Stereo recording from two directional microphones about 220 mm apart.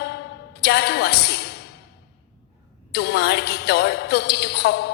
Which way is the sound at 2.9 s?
50° left (ahead or behind).